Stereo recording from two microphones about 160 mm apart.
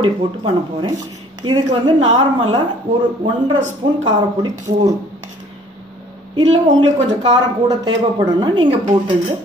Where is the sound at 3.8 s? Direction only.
30° right (ahead or behind).